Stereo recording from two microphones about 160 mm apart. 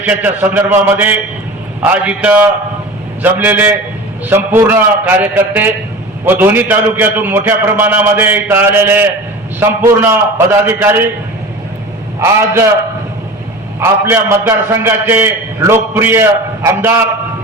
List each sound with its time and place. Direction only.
0.0 s a man's voice: 10° right (ahead or behind)
13.7 s a man's voice: 15° right (ahead or behind)